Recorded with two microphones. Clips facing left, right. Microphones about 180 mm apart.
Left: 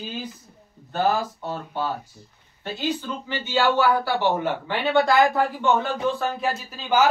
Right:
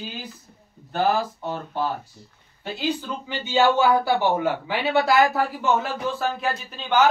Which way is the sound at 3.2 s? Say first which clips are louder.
Right 2 dB; 15° right (ahead or behind).